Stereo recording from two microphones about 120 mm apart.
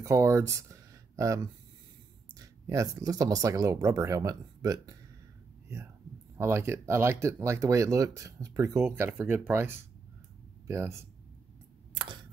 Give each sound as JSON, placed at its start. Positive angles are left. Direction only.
{"t": 0.0, "sound": "speech", "side_deg": -25}
{"t": 6.3, "sound": "speech", "side_deg": -20}